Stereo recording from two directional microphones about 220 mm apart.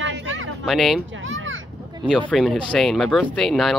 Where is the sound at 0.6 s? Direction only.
Centre (ahead or behind).